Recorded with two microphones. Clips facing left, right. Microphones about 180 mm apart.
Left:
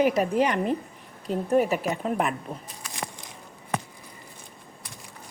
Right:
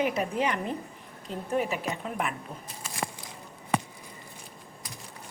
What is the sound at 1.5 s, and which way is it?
Speech, 45° left (ahead or behind).